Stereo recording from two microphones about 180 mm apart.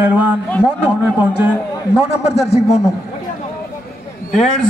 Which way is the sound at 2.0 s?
35° left (ahead or behind).